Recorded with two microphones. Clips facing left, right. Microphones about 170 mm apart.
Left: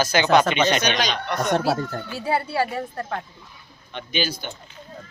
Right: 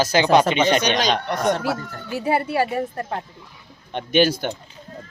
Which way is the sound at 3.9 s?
60° right (ahead or behind).